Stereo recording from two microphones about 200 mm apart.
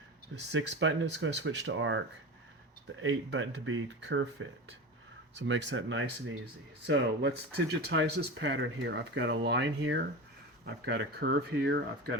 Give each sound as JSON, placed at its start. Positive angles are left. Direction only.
{"t": 0.5, "sound": "speech", "side_deg": -65}
{"t": 3.0, "sound": "speech", "side_deg": -70}
{"t": 5.3, "sound": "speech", "side_deg": -65}
{"t": 6.8, "sound": "speech", "side_deg": -60}